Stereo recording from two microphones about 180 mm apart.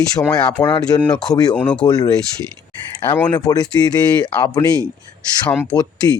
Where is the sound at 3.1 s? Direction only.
10° left (ahead or behind).